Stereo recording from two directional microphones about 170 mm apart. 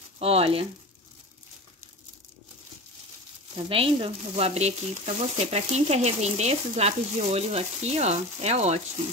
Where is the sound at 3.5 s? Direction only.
35° right (ahead or behind).